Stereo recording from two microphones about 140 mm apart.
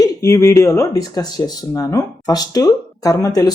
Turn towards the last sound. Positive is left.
turn(degrees=25)  # may be behind; listen again after turning